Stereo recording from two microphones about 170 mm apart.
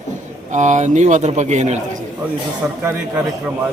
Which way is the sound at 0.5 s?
45° right (ahead or behind).